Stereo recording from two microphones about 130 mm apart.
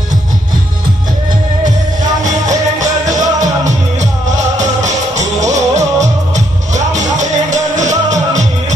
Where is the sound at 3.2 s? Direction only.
65° right (ahead or behind).